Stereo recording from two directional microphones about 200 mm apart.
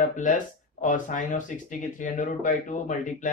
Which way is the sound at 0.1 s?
40° left (ahead or behind).